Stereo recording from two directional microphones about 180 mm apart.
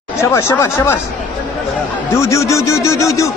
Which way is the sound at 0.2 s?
15° left (ahead or behind).